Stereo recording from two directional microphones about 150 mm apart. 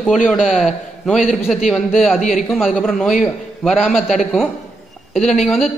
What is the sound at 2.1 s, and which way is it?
Speech, 60° left (ahead or behind).